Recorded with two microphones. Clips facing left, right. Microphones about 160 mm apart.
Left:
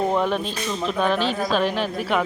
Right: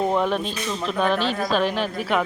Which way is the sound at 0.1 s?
Centre (ahead or behind).